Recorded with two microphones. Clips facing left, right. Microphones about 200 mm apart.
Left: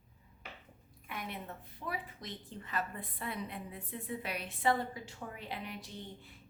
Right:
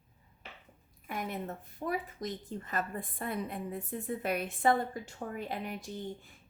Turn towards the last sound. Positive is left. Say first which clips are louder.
# right 7 dB
turn(degrees=-45)  # may be behind; listen again after turning